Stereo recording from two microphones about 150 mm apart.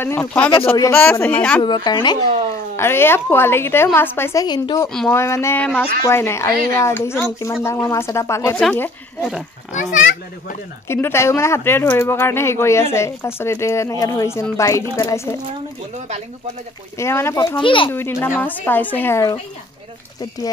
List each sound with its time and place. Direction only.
0.0 s a woman's voice: 15° left (ahead or behind)
1.6 s speech: 30° left (ahead or behind)
2.7 s a woman's voice: 15° left (ahead or behind)
4.8 s speech: 5° left (ahead or behind)
5.1 s a woman's voice: 20° left (ahead or behind)
9.2 s speech: 5° right (ahead or behind)
9.9 s a child's voice: 60° left (ahead or behind)
10.9 s a woman's voice: 15° left (ahead or behind)
17.0 s a woman's voice: 15° left (ahead or behind)
17.6 s a child's voice: 35° left (ahead or behind)
17.8 s a woman's voice: 15° left (ahead or behind)